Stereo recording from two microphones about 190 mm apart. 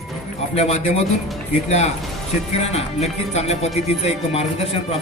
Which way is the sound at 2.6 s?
35° left (ahead or behind).